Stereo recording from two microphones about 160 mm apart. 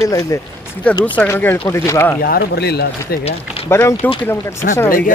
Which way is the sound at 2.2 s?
80° left.